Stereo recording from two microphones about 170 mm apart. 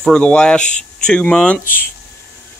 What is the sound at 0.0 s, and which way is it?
Speech, 5° left (ahead or behind).